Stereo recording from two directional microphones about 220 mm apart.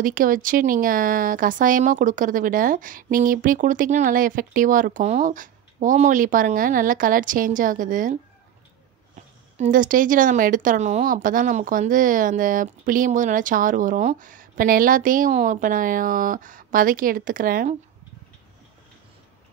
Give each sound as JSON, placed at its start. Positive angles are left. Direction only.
{"t": 0.0, "sound": "speech", "side_deg": -40}
{"t": 9.6, "sound": "speech", "side_deg": -35}